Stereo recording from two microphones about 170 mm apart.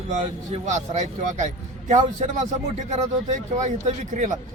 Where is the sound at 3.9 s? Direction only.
45° right (ahead or behind).